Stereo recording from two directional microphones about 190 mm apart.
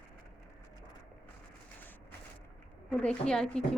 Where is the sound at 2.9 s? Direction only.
5° left (ahead or behind).